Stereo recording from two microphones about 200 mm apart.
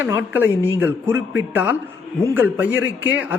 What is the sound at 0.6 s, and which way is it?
Speech, 15° left (ahead or behind).